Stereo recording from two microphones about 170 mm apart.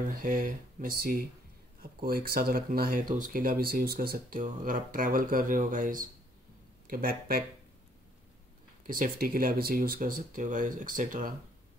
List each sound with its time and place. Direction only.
0.1 s speech: 55° right (ahead or behind)
8.8 s speech: 55° right (ahead or behind)